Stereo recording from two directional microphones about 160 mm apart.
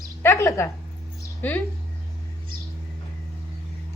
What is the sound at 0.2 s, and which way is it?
Speech, 15° left (ahead or behind).